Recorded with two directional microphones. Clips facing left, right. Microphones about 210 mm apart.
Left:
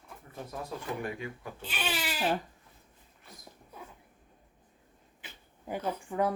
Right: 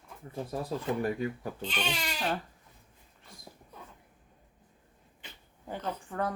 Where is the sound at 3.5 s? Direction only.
10° right (ahead or behind).